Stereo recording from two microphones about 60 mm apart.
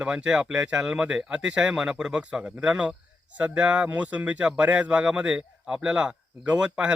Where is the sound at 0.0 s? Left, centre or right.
Centre.